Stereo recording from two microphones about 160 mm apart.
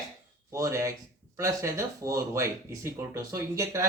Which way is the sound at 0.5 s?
20° right (ahead or behind).